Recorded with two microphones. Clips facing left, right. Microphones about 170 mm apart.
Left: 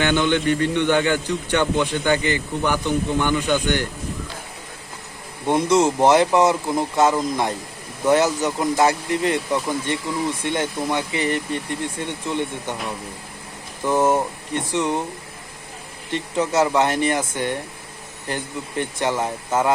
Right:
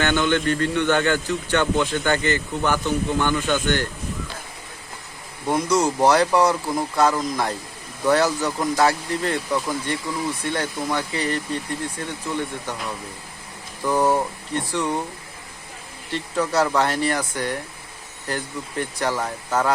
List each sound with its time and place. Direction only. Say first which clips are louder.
0.0 s a man's voice: left 1 dB; 15° left (ahead or behind)
5.5 s speech: left 3 dB; 25° left (ahead or behind)
13.8 s speech: left 1 dB; 20° left (ahead or behind)
16.1 s speech: left 2 dB; 20° left (ahead or behind)